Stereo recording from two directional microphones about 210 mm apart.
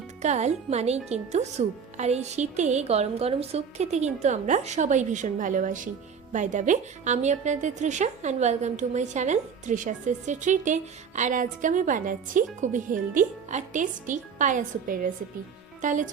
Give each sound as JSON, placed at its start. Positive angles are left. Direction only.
{"t": 0.2, "sound": "a woman's voice", "side_deg": -35}